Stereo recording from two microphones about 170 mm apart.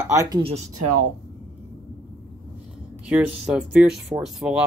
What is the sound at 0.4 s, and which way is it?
Speech, 35° right (ahead or behind).